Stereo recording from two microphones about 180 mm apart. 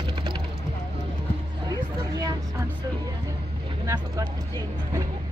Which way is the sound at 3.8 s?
20° right (ahead or behind).